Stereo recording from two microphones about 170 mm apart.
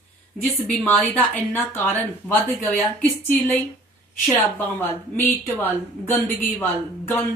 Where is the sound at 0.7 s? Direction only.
5° left (ahead or behind).